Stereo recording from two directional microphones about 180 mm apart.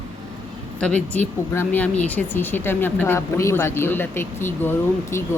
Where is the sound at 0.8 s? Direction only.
5° left (ahead or behind).